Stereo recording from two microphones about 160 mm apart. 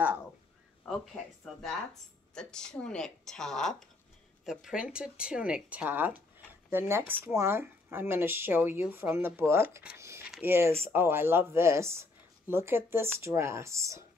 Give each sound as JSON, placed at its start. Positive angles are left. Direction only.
{"t": 0.8, "sound": "a woman's voice", "side_deg": 0}
{"t": 9.9, "sound": "a sound", "side_deg": -15}
{"t": 10.4, "sound": "speech", "side_deg": -15}